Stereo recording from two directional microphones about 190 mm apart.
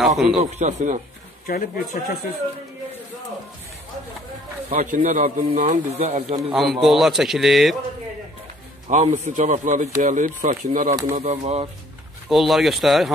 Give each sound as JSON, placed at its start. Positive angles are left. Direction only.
{"t": 0.0, "sound": "a man's voice", "side_deg": 0}
{"t": 0.4, "sound": "speech", "side_deg": -40}
{"t": 1.5, "sound": "speech", "side_deg": 45}
{"t": 4.6, "sound": "speech", "side_deg": -40}
{"t": 6.5, "sound": "a man's voice", "side_deg": 0}
{"t": 8.8, "sound": "speech", "side_deg": -40}
{"t": 12.3, "sound": "a man's voice", "side_deg": 0}